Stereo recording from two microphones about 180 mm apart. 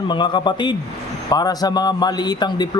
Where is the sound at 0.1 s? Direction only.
25° left (ahead or behind).